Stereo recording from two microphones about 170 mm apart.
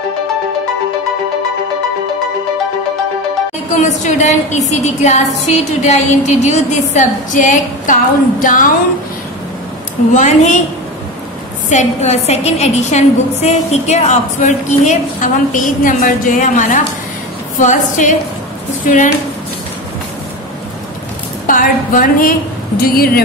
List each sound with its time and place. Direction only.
3.7 s a woman's voice: 45° left (ahead or behind)
10.1 s a woman's voice: 45° left (ahead or behind)
11.7 s a woman's voice: 40° left (ahead or behind)
21.5 s a woman's voice: 50° left (ahead or behind)
22.8 s speech: 65° left (ahead or behind)